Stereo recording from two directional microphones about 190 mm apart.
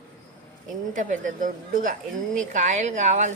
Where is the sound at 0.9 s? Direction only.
45° right (ahead or behind).